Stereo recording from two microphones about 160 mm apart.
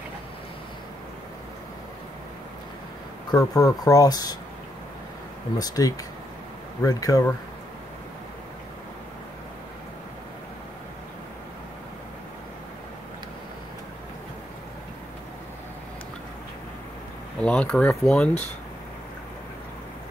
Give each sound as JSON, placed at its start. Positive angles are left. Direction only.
{"t": 3.3, "sound": "speech", "side_deg": 20}
{"t": 5.6, "sound": "speech", "side_deg": 20}
{"t": 17.4, "sound": "speech", "side_deg": 5}